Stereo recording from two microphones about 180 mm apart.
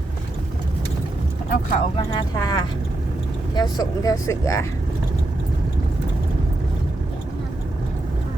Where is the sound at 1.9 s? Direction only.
25° left (ahead or behind).